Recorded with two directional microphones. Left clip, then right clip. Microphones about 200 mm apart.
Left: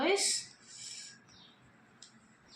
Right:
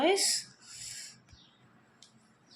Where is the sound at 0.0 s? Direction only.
45° right (ahead or behind).